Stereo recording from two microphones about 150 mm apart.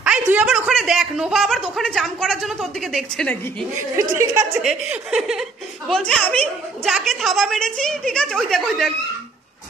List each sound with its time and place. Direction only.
0.0 s a sound: 5° right (ahead or behind)
0.7 s speech: centre (ahead or behind)
3.9 s speech: 20° right (ahead or behind)
4.6 s speech: 5° right (ahead or behind)